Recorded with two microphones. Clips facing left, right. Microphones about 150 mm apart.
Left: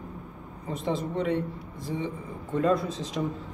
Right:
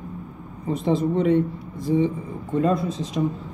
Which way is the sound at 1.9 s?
25° right (ahead or behind).